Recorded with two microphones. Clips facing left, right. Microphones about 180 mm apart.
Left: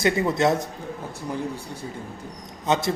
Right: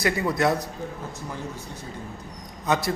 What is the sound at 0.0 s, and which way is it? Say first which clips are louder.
Speech: left 2 dB; 25° left (ahead or behind).